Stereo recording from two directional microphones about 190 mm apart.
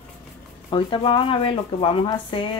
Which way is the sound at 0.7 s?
25° left (ahead or behind).